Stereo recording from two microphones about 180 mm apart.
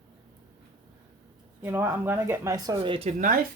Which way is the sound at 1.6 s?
15° right (ahead or behind).